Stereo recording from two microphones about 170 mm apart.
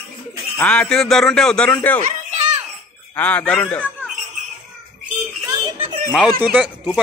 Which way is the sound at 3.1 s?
10° left (ahead or behind).